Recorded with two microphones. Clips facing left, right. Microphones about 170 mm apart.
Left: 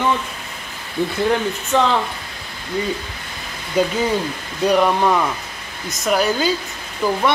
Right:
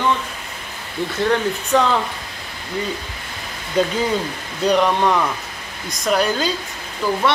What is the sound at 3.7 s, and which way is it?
Speech, 10° left (ahead or behind).